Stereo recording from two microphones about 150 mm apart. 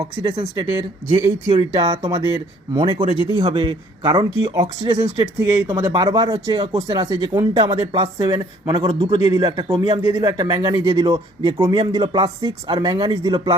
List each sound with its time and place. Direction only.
0.0 s speech: 25° right (ahead or behind)